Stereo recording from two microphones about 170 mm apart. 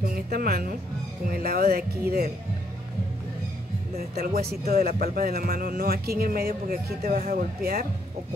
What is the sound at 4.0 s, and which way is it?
Speech, 65° right (ahead or behind).